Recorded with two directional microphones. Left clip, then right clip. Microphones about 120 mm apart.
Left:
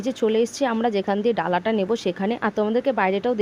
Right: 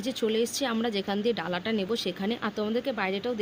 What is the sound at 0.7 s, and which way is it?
Speech, 25° left (ahead or behind).